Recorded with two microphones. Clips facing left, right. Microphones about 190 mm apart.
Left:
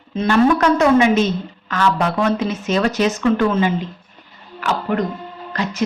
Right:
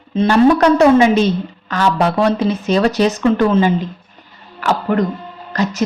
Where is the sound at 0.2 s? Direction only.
35° right (ahead or behind).